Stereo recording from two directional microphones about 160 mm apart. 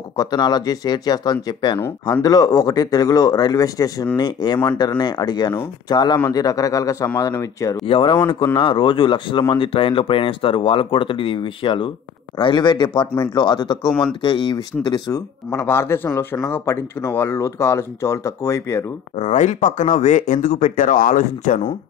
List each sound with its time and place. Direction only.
0.2 s speech: 25° left (ahead or behind)
7.8 s speech: 35° left (ahead or behind); by 18.9 s 15° left (ahead or behind)
19.1 s speech: 45° left (ahead or behind)